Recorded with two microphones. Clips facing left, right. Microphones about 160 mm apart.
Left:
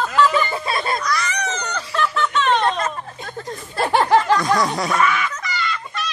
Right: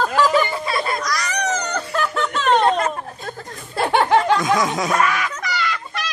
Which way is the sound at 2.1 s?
45° right (ahead or behind).